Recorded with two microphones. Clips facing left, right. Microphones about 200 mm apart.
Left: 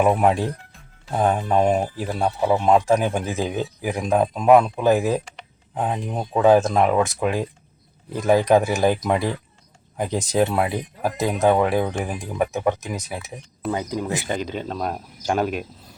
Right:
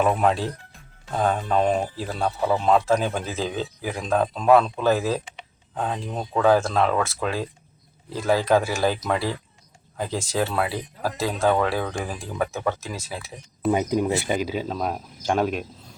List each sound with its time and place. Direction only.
0.0 s speech: 15° left (ahead or behind)
13.7 s speech: 15° right (ahead or behind); by 16.0 s centre (ahead or behind)